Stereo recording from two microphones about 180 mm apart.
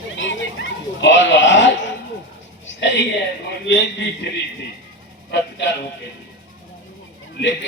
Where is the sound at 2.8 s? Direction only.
75° left (ahead or behind).